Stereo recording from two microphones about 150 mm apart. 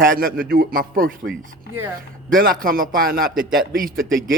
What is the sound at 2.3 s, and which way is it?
A man's voice, 70° right (ahead or behind).